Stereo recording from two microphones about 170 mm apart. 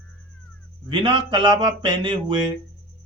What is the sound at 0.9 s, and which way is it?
Speech, 30° right (ahead or behind).